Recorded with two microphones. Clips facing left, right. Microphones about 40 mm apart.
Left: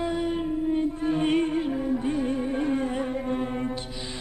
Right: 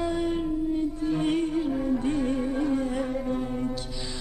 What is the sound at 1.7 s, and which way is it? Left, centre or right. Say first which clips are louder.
Music: even; centre.